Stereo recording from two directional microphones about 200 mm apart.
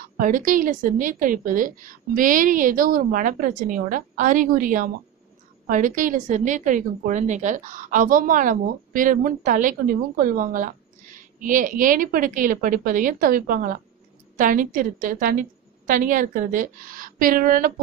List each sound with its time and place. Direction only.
0.2 s a woman's voice: 45° right (ahead or behind)